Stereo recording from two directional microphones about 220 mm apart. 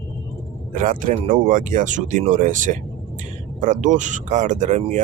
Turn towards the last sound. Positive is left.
turn(degrees=-35)  # may be behind; listen again after turning